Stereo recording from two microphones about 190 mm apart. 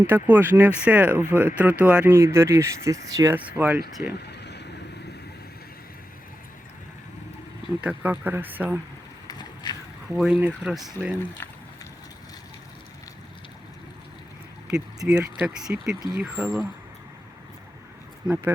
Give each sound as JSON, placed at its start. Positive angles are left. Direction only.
{"t": 0.1, "sound": "speech", "side_deg": -10}
{"t": 4.2, "sound": "vehicle", "side_deg": 60}
{"t": 7.8, "sound": "speech", "side_deg": -10}
{"t": 9.2, "sound": "a sound", "side_deg": 20}
{"t": 10.2, "sound": "speech", "side_deg": -5}
{"t": 11.4, "sound": "a sound", "side_deg": 10}
{"t": 14.7, "sound": "speech", "side_deg": -5}